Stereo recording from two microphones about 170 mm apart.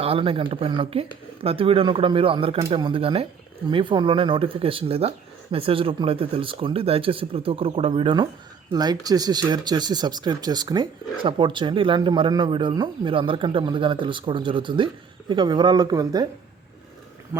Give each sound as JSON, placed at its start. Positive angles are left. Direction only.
{"t": 0.0, "sound": "speech", "side_deg": -35}